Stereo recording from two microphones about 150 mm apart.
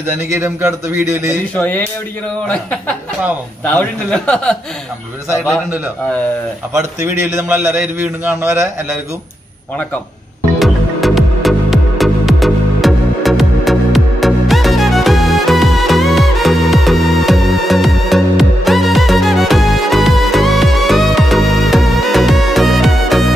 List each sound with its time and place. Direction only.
0.3 s a man's voice: 15° right (ahead or behind)
1.5 s a man's voice: 10° left (ahead or behind)
7.0 s a man's voice: 15° right (ahead or behind)
10.6 s music: centre (ahead or behind)